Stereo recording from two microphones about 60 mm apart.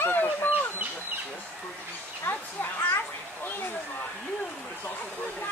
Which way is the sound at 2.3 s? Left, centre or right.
Left.